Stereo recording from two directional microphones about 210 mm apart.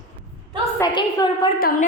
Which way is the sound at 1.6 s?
45° left (ahead or behind).